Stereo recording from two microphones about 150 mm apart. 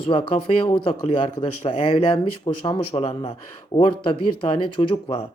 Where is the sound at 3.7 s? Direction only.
35° left (ahead or behind).